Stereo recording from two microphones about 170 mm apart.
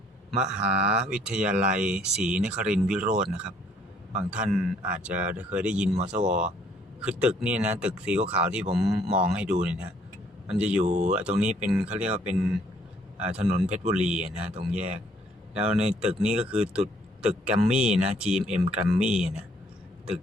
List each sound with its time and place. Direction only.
0.9 s speech: 5° right (ahead or behind)
3.0 s speech: 45° right (ahead or behind)
4.4 s speech: centre (ahead or behind)
10.8 s speech: 40° right (ahead or behind)
11.1 s speech: 5° right (ahead or behind)
13.7 s speech: 45° right (ahead or behind)
13.9 s speech: 5° right (ahead or behind)